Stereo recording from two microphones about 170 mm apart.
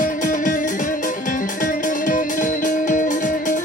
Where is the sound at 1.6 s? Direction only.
50° left (ahead or behind).